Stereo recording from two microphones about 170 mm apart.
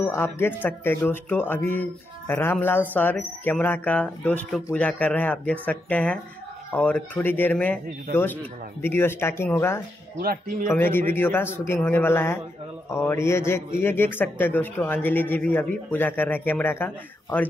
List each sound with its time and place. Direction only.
0.0 s speech: 15° left (ahead or behind)
10.2 s a man's voice: 55° right (ahead or behind)
10.7 s speech: 10° left (ahead or behind)